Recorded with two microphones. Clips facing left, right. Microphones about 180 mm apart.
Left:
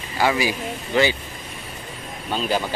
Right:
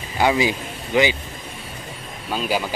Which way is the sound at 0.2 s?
20° right (ahead or behind).